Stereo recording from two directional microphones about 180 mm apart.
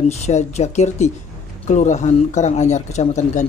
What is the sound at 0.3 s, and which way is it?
Speech, 40° left (ahead or behind).